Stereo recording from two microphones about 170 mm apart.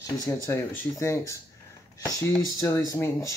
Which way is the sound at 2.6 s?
20° left (ahead or behind).